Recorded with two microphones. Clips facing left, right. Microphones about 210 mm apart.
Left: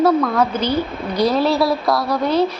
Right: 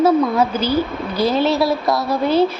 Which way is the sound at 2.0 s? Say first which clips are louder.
Right 1 dB; 25° right (ahead or behind).